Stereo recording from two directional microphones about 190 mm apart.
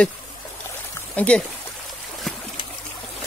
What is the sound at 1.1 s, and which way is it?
Speech, 5° left (ahead or behind).